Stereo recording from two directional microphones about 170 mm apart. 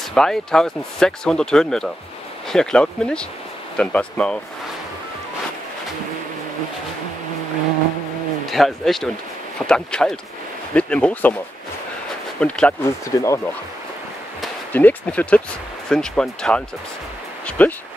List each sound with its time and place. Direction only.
0.1 s speech: 5° left (ahead or behind)
8.5 s speech: centre (ahead or behind)
12.4 s speech: 5° left (ahead or behind)
13.0 s speech: 20° left (ahead or behind)
14.7 s speech: 10° left (ahead or behind)